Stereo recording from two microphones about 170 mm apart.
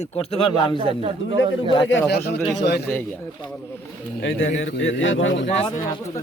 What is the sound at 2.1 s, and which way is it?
Speech, 75° left (ahead or behind).